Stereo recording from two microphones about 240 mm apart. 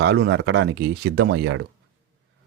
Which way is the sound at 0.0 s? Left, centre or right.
Right.